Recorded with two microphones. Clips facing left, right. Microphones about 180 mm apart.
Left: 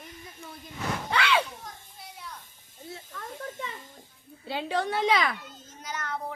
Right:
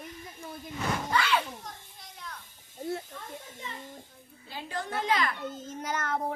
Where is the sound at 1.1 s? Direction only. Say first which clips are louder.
Left 3 dB; 75° left (ahead or behind).